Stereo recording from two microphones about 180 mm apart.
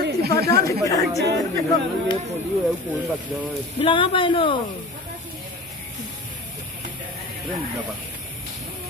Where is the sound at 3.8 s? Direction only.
30° left (ahead or behind).